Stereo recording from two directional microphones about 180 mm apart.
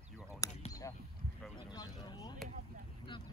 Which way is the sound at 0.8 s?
20° left (ahead or behind).